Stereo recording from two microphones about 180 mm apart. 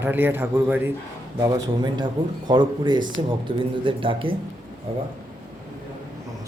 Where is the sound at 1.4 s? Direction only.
20° right (ahead or behind).